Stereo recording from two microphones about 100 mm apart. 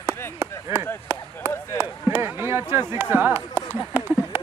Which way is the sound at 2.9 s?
25° right (ahead or behind).